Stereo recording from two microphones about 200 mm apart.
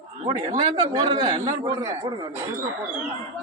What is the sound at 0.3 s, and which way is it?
A man's voice, 25° right (ahead or behind).